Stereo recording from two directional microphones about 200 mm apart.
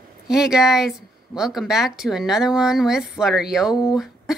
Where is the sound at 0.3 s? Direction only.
5° right (ahead or behind).